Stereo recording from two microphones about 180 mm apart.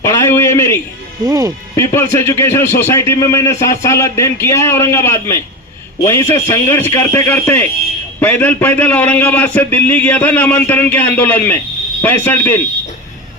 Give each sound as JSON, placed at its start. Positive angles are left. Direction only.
{"t": 0.0, "sound": "a sound", "side_deg": 15}
{"t": 1.2, "sound": "speech", "side_deg": -20}
{"t": 1.7, "sound": "a man's voice", "side_deg": 15}